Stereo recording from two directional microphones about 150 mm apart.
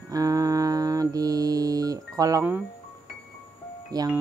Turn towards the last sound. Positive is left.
turn(degrees=-25)  # may be behind; listen again after turning